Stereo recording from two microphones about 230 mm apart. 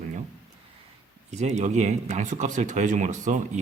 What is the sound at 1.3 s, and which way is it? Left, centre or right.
Speech, right.